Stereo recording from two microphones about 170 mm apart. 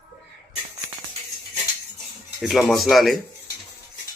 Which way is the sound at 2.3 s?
Centre (ahead or behind).